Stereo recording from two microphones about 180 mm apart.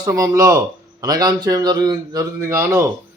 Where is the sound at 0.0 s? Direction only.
20° right (ahead or behind).